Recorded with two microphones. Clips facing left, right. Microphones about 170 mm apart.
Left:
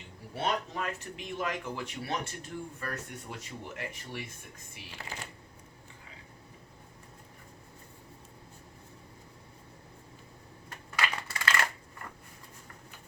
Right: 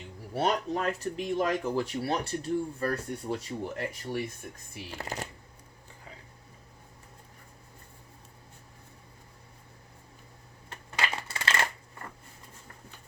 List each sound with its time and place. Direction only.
0.3 s speech: 40° right (ahead or behind)
10.7 s coin: 25° right (ahead or behind)